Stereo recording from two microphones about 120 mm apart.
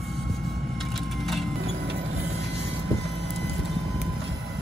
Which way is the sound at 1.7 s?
60° right (ahead or behind).